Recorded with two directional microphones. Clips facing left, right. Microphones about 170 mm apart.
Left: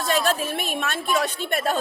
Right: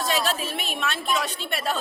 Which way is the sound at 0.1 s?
50° left (ahead or behind).